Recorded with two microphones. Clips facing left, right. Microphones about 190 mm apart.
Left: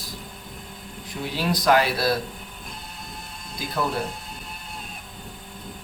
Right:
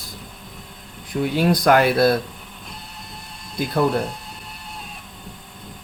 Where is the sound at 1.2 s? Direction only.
55° right (ahead or behind).